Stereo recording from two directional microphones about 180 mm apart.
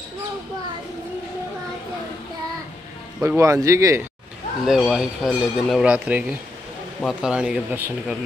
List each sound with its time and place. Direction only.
3.2 s speech: 15° right (ahead or behind)
4.6 s speech: centre (ahead or behind)